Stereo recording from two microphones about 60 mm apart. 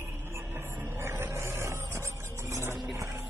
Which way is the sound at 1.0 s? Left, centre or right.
Right.